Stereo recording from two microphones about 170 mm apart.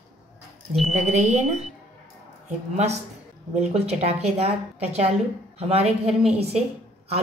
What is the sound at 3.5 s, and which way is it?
A woman's voice, 40° right (ahead or behind).